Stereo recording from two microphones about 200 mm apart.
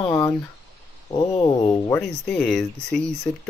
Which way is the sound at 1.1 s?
20° left (ahead or behind).